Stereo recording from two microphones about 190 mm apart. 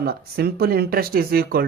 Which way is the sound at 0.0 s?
55° right (ahead or behind).